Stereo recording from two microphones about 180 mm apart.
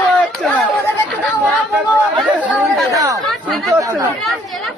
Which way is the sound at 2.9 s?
20° right (ahead or behind).